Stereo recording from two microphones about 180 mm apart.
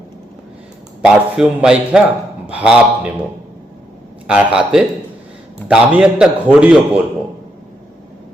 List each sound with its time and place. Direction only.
1.0 s a man's voice: 5° right (ahead or behind)
4.3 s a man's voice: 5° right (ahead or behind)